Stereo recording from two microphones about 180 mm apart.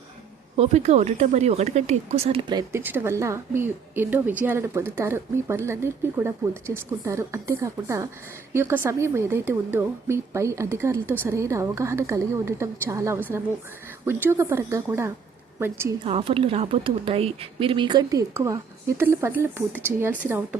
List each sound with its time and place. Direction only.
0.5 s speech: 35° right (ahead or behind)
2.8 s a woman's voice: 10° right (ahead or behind)
16.0 s speech: 30° right (ahead or behind); by 20.6 s 10° right (ahead or behind)